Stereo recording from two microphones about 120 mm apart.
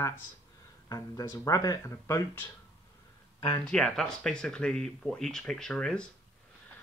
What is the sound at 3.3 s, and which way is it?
Speech, 45° left (ahead or behind).